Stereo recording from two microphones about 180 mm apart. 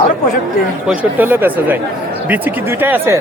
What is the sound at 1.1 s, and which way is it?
Speech, 10° right (ahead or behind).